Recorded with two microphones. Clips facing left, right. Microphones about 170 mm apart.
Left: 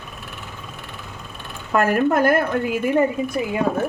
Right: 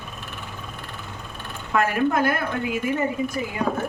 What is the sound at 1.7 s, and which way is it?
Speech, 50° left (ahead or behind).